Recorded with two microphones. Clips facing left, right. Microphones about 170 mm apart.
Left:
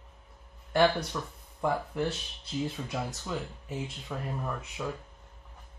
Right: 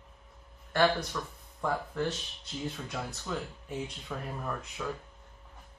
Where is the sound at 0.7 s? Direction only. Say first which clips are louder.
Left 2 dB; 15° left (ahead or behind).